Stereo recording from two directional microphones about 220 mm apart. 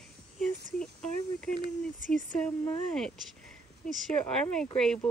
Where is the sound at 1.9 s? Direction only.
35° right (ahead or behind).